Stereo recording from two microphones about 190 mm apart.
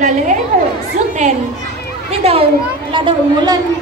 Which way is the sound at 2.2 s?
30° right (ahead or behind).